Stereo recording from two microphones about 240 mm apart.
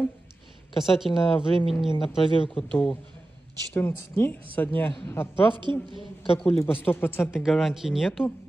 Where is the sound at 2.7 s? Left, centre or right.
Centre.